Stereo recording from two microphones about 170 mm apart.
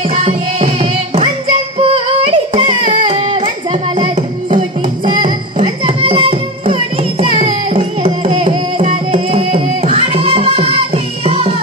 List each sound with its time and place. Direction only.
0.1 s music: 40° right (ahead or behind)
5.0 s music: 30° right (ahead or behind)